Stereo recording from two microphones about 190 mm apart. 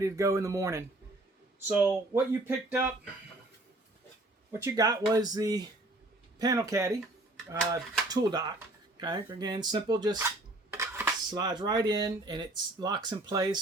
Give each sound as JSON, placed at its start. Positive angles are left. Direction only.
{"t": 0.0, "sound": "speech", "side_deg": -15}
{"t": 4.6, "sound": "speech", "side_deg": -20}
{"t": 8.0, "sound": "speech", "side_deg": -20}